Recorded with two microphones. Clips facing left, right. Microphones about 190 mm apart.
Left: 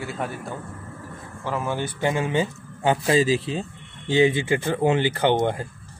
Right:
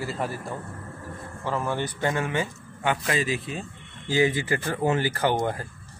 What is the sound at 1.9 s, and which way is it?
Speech, 20° left (ahead or behind).